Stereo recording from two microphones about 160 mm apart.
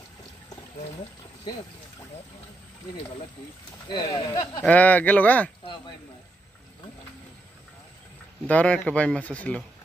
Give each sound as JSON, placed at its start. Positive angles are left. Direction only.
{"t": 3.9, "sound": "speech", "side_deg": 25}
{"t": 4.6, "sound": "speech", "side_deg": 10}
{"t": 8.5, "sound": "speech", "side_deg": 10}